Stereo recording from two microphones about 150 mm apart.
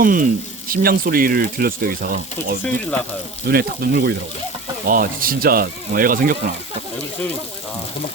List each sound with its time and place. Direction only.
0.0 s speech: 65° right (ahead or behind); by 4.1 s 90° right
4.9 s speech: 70° right (ahead or behind)